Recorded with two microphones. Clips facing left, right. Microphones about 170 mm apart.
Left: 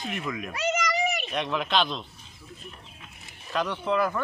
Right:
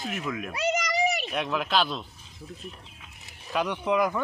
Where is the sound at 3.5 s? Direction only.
10° right (ahead or behind).